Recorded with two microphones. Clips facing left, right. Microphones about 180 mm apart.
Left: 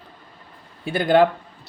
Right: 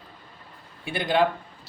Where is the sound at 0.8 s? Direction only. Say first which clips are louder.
Left 6 dB; 45° left (ahead or behind).